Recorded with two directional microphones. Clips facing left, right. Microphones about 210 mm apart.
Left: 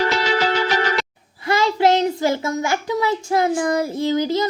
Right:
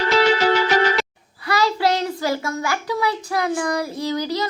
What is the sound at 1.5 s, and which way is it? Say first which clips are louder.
A child's voice: left 3 dB; 25° left (ahead or behind).